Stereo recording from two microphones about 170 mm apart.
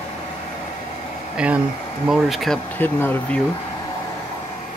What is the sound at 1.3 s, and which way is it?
Speech, 5° right (ahead or behind).